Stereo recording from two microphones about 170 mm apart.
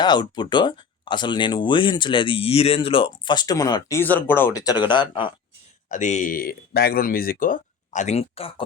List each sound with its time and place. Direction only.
0.0 s speech: 25° left (ahead or behind)
5.9 s speech: 45° left (ahead or behind)